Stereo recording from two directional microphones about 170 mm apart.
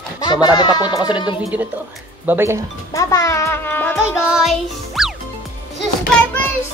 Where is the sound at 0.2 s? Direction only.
25° left (ahead or behind).